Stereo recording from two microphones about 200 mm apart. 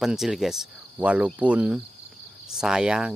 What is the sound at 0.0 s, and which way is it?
Speech, centre (ahead or behind).